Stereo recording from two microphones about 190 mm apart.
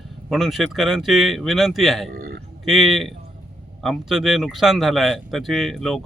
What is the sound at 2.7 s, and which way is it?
Speech, centre (ahead or behind).